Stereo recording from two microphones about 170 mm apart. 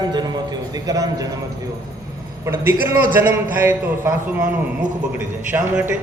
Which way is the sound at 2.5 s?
15° right (ahead or behind).